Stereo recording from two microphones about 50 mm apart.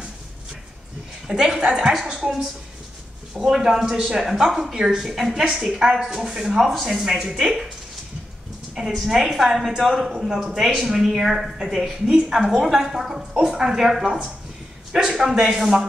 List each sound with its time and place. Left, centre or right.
1.2 s a woman's voice: centre
9.0 s a woman's voice: centre
14.0 s a woman's voice: centre